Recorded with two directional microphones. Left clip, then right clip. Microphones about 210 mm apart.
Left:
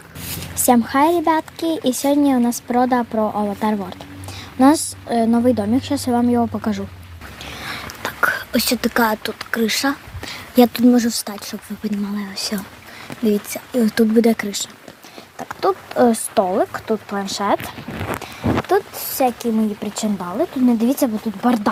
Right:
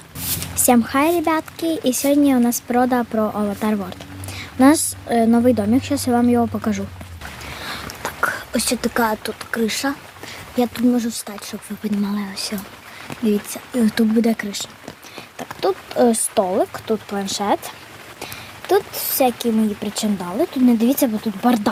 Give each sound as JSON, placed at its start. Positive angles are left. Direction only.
{"t": 0.5, "sound": "speech", "side_deg": 0}
{"t": 7.7, "sound": "whispering", "side_deg": 5}
{"t": 10.5, "sound": "speech", "side_deg": 30}
{"t": 11.3, "sound": "speech", "side_deg": 10}
{"t": 15.4, "sound": "speech", "side_deg": 0}
{"t": 18.7, "sound": "speech", "side_deg": -5}